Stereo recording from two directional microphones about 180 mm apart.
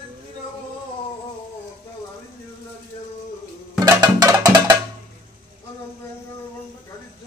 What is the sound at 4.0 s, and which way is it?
Music, 20° right (ahead or behind).